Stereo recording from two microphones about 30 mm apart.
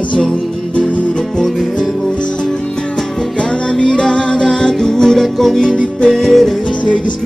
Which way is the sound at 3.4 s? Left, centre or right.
Left.